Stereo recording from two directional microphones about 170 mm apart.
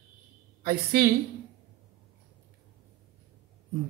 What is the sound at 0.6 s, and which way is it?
Speech, 65° right (ahead or behind).